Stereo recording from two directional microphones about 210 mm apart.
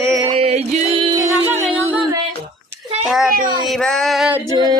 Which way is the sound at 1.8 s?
10° right (ahead or behind).